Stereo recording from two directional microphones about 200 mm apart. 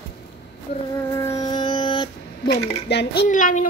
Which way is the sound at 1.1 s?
15° left (ahead or behind).